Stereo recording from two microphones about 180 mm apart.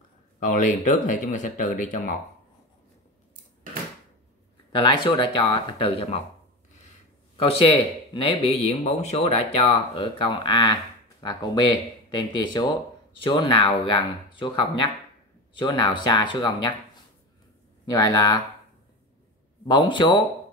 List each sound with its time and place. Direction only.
0.4 s speech: 45° left (ahead or behind)
4.7 s speech: 25° left (ahead or behind)
7.3 s speech: 30° left (ahead or behind)
17.8 s speech: 20° left (ahead or behind)
19.7 s speech: 25° left (ahead or behind)